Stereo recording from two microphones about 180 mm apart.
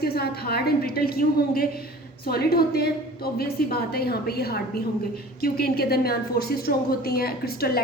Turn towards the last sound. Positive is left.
turn(degrees=60)  # may be behind; listen again after turning